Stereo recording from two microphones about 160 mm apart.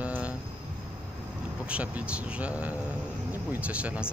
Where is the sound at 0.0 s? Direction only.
10° right (ahead or behind).